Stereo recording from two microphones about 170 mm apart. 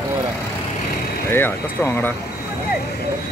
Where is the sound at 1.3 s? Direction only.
10° left (ahead or behind).